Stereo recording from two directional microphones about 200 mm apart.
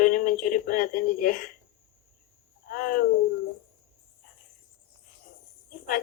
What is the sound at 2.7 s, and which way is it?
Speech, 45° left (ahead or behind).